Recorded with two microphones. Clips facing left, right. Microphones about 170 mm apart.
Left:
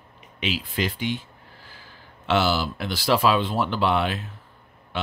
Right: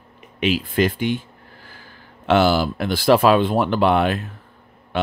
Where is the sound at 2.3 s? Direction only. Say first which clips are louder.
Right 6 dB; 50° right (ahead or behind).